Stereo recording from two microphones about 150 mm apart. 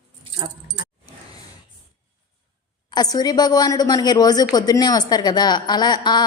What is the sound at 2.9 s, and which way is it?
A woman's voice, 25° left (ahead or behind).